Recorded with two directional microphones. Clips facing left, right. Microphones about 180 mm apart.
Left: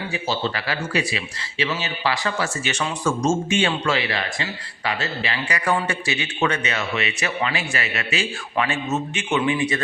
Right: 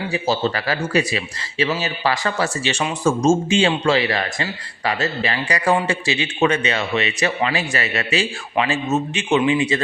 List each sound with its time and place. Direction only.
0.1 s a man's voice: 40° right (ahead or behind)
3.0 s a man's voice: 25° right (ahead or behind)